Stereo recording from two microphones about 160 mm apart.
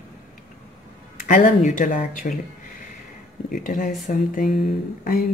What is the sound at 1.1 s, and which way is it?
Speech, 60° left (ahead or behind).